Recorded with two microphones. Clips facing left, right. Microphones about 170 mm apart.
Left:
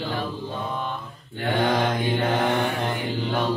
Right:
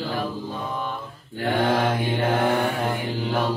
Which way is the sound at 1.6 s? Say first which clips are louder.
Left 1 dB; 5° right (ahead or behind).